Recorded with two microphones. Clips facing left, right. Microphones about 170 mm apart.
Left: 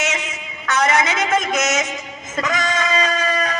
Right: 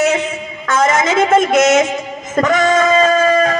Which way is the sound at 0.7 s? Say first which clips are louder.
Right 4 dB; 50° right (ahead or behind).